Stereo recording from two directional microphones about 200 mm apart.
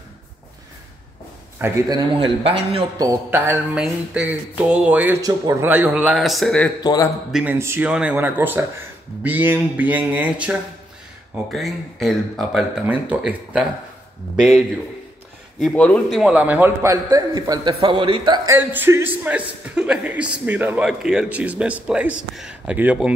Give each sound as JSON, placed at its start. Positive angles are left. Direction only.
{"t": 1.6, "sound": "a man's voice", "side_deg": -20}
{"t": 6.8, "sound": "a man's voice", "side_deg": 20}
{"t": 7.3, "sound": "a man's voice", "side_deg": -10}
{"t": 11.5, "sound": "speech", "side_deg": 0}
{"t": 15.6, "sound": "a man's voice", "side_deg": 5}
{"t": 18.6, "sound": "a man's voice", "side_deg": -10}